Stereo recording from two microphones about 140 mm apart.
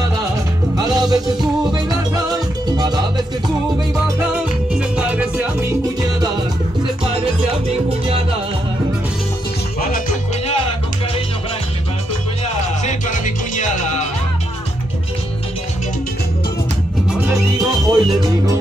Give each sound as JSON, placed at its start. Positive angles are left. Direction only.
{"t": 0.7, "sound": "music", "side_deg": -25}
{"t": 4.7, "sound": "music", "side_deg": -10}
{"t": 9.8, "sound": "music", "side_deg": 90}
{"t": 12.8, "sound": "music", "side_deg": 65}
{"t": 17.3, "sound": "music", "side_deg": -25}